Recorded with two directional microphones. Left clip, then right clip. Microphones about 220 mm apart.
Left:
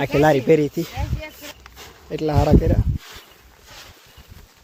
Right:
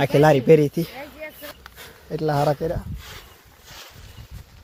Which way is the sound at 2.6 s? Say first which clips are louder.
Left 3 dB; 30° left (ahead or behind).